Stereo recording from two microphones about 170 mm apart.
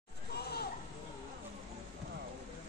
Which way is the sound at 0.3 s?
70° left (ahead or behind).